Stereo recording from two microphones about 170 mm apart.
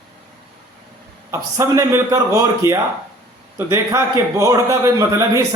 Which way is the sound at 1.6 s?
20° right (ahead or behind).